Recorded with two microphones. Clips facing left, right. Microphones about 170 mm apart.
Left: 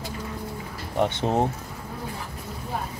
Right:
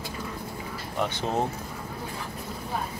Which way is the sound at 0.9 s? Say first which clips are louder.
Left 5 dB; 25° left (ahead or behind).